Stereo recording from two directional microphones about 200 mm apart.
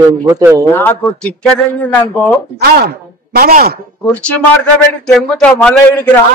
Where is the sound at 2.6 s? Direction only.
50° right (ahead or behind).